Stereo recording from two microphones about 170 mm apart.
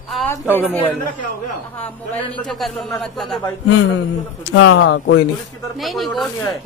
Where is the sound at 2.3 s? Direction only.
Centre (ahead or behind).